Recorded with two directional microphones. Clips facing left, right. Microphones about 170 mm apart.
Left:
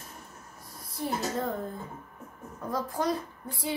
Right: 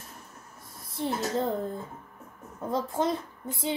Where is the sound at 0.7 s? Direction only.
25° right (ahead or behind).